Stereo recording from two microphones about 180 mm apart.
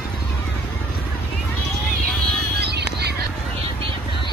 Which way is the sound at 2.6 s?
65° right (ahead or behind).